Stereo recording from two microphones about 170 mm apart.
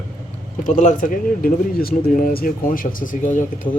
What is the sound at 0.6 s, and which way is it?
Speech, 45° left (ahead or behind).